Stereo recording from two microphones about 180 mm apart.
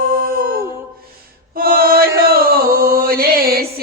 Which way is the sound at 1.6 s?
55° right (ahead or behind).